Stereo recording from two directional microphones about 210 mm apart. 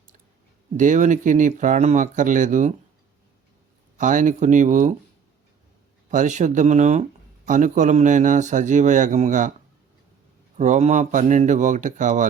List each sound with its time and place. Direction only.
0.8 s a man's voice: 35° right (ahead or behind)
3.9 s a man's voice: 40° right (ahead or behind)
6.1 s a man's voice: 35° right (ahead or behind)
10.6 s a man's voice: 35° right (ahead or behind)